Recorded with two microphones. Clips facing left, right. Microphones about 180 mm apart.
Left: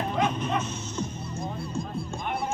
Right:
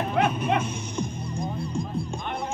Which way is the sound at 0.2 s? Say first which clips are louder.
Right 3 dB; 65° right (ahead or behind).